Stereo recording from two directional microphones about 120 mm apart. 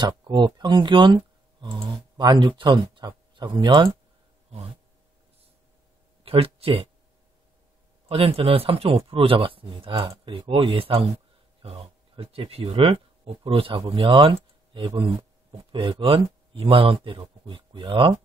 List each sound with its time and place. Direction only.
0.0 s speech: 40° right (ahead or behind)
6.2 s speech: 55° right (ahead or behind)
8.1 s speech: 50° right (ahead or behind)